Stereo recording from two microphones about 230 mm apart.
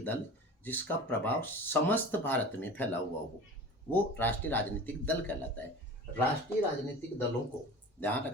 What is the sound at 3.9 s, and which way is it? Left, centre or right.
Speech, centre.